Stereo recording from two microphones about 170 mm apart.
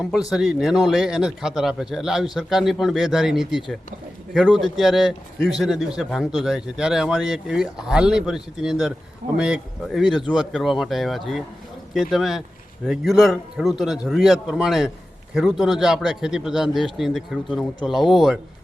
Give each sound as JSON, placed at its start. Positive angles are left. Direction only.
{"t": 0.3, "sound": "speech", "side_deg": 0}